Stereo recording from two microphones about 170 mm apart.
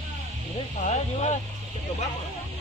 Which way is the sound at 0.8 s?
45° left (ahead or behind).